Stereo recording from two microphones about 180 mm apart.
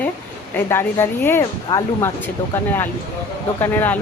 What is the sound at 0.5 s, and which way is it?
Speech, 10° left (ahead or behind).